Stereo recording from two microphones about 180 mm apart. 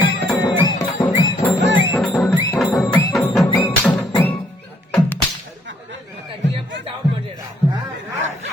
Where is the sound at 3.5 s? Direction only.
10° left (ahead or behind).